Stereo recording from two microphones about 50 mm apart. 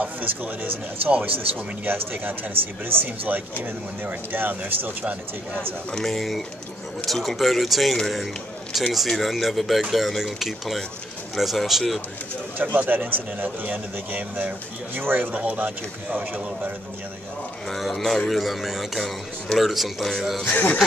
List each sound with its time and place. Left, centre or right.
0.0 s speech: right
5.9 s speech: centre
12.5 s speech: right
15.3 s speech: right
17.6 s speech: centre
20.4 s speech: left